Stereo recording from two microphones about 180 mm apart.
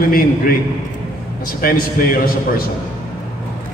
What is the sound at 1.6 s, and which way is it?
A man's voice, 55° left (ahead or behind).